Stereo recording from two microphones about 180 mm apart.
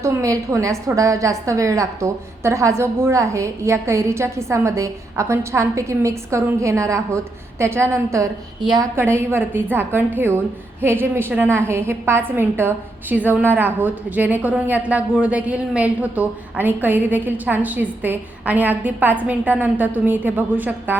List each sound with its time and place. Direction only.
0.0 s a woman's voice: 15° right (ahead or behind)